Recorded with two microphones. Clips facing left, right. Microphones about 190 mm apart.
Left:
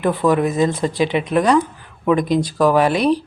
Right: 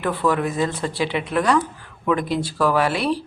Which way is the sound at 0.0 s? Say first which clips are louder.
Left 5 dB; 15° left (ahead or behind).